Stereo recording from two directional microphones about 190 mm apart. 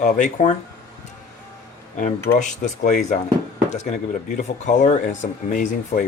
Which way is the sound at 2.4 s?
40° left (ahead or behind).